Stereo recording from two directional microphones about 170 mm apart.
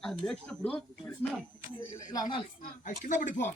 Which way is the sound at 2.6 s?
50° left (ahead or behind).